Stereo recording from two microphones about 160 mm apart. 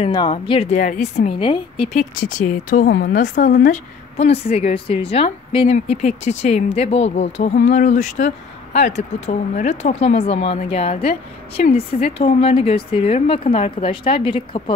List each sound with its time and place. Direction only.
0.1 s a woman's voice: 30° left (ahead or behind)
2.0 s speech: 55° left (ahead or behind); by 3.2 s 75° left (ahead or behind)
3.2 s speech: 55° left (ahead or behind)
4.2 s a woman's voice: 40° left (ahead or behind)